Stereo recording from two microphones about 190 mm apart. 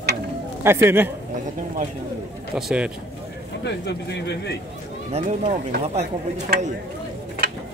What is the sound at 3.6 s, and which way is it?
Speech, 65° left (ahead or behind).